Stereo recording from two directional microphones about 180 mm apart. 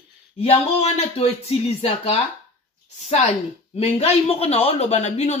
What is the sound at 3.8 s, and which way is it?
Speech, 35° left (ahead or behind).